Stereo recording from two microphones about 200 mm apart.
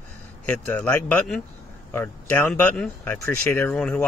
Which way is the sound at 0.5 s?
10° left (ahead or behind).